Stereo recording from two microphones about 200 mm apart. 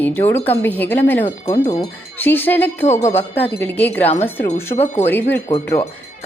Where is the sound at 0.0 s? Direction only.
10° left (ahead or behind).